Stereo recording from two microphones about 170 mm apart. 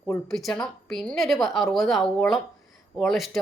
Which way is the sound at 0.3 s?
Centre (ahead or behind).